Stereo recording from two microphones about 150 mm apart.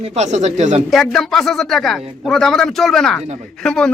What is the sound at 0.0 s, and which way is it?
Speech, 45° right (ahead or behind).